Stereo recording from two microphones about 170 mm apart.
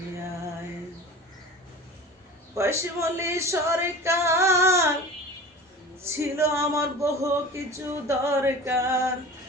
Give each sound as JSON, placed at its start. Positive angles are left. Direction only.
{"t": 2.6, "sound": "speech", "side_deg": -15}
{"t": 6.0, "sound": "speech", "side_deg": -15}